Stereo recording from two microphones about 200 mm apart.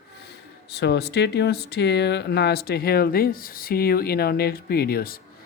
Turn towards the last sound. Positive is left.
turn(degrees=50)  # may be behind; listen again after turning